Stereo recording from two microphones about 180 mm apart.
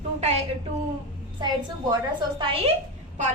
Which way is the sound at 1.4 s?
25° right (ahead or behind).